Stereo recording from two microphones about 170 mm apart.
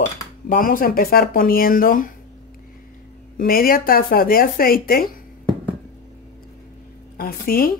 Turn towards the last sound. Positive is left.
turn(degrees=60)  # may be behind; listen again after turning